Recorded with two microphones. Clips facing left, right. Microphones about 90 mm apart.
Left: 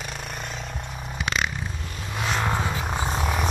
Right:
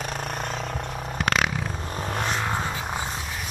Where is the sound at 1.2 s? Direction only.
60° right (ahead or behind).